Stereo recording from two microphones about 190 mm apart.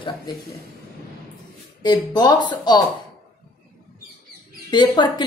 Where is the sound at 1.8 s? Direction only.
20° left (ahead or behind).